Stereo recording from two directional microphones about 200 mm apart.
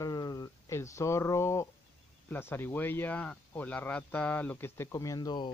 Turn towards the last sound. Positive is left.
turn(degrees=20)  # may be behind; listen again after turning